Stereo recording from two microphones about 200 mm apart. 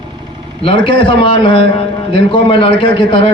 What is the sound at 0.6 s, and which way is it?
A man's voice, 25° left (ahead or behind).